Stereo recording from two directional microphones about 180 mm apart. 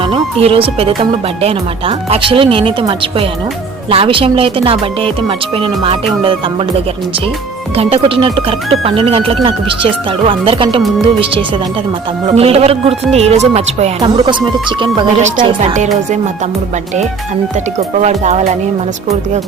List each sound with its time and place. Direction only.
0.0 s speech: 30° right (ahead or behind)
7.8 s speech: 35° right (ahead or behind)
17.7 s speech: 40° right (ahead or behind)